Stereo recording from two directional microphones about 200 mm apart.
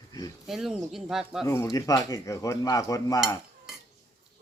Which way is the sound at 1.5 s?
15° left (ahead or behind).